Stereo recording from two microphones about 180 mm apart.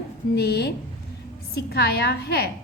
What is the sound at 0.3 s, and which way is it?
A woman's voice, 65° left (ahead or behind).